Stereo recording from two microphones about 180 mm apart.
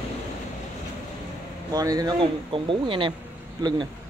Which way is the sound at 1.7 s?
20° right (ahead or behind).